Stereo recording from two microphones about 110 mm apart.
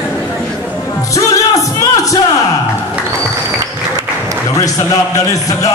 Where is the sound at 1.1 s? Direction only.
30° left (ahead or behind).